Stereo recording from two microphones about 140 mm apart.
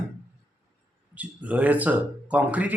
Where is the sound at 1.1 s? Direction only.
10° right (ahead or behind).